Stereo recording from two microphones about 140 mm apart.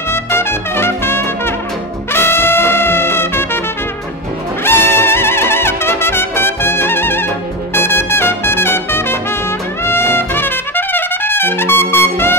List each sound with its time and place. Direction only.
0.1 s trumpet: 15° left (ahead or behind)
2.1 s music: 15° left (ahead or behind)
4.6 s trumpet: 15° left (ahead or behind)